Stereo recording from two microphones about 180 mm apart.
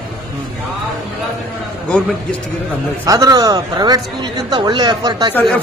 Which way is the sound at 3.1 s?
20° right (ahead or behind).